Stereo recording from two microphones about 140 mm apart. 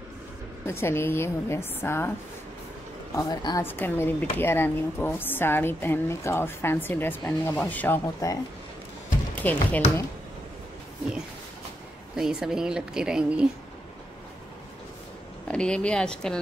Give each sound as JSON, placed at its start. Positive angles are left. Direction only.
{"t": 0.7, "sound": "speech", "side_deg": 15}
{"t": 3.1, "sound": "speech", "side_deg": 30}
{"t": 3.6, "sound": "speech", "side_deg": 15}
{"t": 8.2, "sound": "speech", "side_deg": 25}
{"t": 9.3, "sound": "speech", "side_deg": 10}
{"t": 12.2, "sound": "a woman's voice", "side_deg": -5}
{"t": 15.4, "sound": "speech", "side_deg": 5}